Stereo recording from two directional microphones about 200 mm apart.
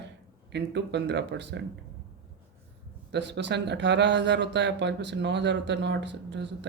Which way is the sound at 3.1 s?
60° right (ahead or behind).